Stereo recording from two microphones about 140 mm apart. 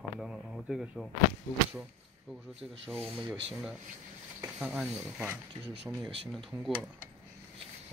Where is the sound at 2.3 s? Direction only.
5° right (ahead or behind).